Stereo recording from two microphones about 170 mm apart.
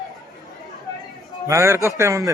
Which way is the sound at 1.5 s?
15° right (ahead or behind).